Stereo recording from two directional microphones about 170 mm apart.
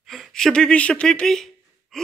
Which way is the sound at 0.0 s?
Centre (ahead or behind).